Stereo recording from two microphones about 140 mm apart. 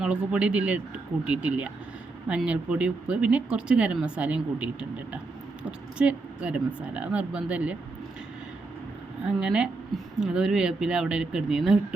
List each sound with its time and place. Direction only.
0.0 s speech: 5° right (ahead or behind)
9.4 s speech: 5° right (ahead or behind)